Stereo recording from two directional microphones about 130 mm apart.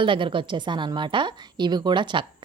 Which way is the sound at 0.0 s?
40° right (ahead or behind).